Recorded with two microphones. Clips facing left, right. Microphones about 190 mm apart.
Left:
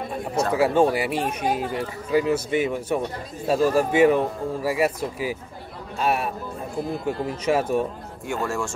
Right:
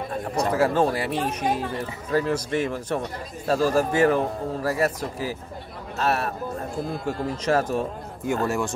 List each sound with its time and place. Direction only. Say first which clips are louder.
0.5 s speech: left 2 dB; 10° left (ahead or behind)
8.3 s speech: right 2 dB; 20° right (ahead or behind)